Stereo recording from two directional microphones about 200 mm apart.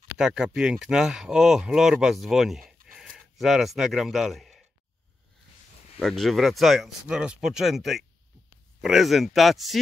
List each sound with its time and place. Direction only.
0.2 s speech: 5° right (ahead or behind)
5.9 s speech: centre (ahead or behind)